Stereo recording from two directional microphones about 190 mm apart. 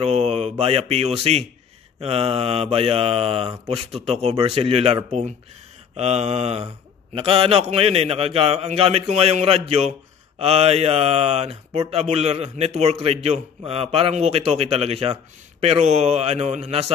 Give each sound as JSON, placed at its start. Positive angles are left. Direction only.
{"t": 0.0, "sound": "speech", "side_deg": -35}